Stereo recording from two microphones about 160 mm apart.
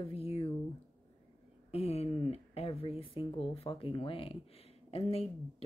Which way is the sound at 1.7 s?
40° left (ahead or behind).